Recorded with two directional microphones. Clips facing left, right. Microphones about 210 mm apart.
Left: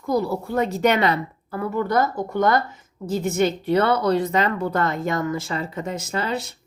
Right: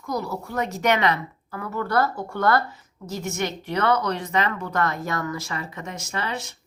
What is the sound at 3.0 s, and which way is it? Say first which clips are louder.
Speech: left 7 dB; 30° left (ahead or behind).